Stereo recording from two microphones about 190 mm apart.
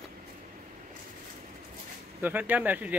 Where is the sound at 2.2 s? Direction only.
10° right (ahead or behind).